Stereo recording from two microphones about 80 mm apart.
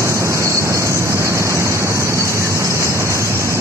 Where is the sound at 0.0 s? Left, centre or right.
Right.